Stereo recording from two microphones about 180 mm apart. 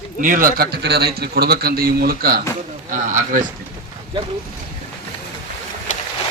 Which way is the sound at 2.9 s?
45° right (ahead or behind).